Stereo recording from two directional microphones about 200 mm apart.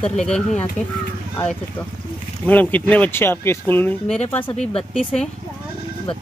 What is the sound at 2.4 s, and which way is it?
Speech, 10° left (ahead or behind).